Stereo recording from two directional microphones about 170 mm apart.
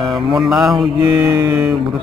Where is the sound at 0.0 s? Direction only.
Centre (ahead or behind).